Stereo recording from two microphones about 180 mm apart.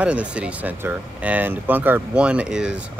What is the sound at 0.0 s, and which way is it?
Speech, 5° right (ahead or behind).